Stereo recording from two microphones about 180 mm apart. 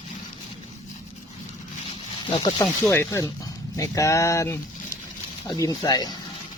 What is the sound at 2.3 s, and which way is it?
Speech, 25° left (ahead or behind).